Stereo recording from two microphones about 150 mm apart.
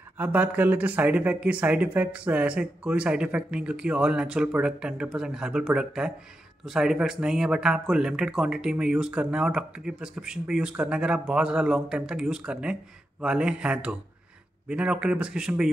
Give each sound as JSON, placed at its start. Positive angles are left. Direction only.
{"t": 0.2, "sound": "speech", "side_deg": -10}